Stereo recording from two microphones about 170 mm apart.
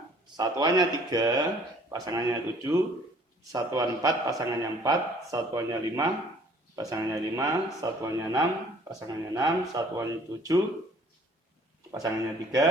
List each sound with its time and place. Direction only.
0.3 s a man's voice: 25° right (ahead or behind)
11.9 s a man's voice: 20° right (ahead or behind)